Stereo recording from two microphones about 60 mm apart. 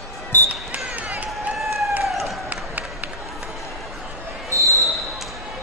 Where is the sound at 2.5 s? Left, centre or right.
Right.